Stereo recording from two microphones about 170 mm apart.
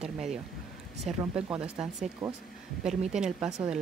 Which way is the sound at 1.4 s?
5° right (ahead or behind).